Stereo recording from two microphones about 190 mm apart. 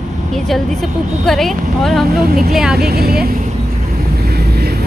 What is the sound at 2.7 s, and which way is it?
Speech, 55° right (ahead or behind).